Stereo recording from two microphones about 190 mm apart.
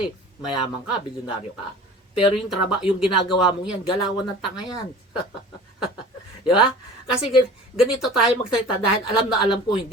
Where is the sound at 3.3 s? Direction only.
25° left (ahead or behind).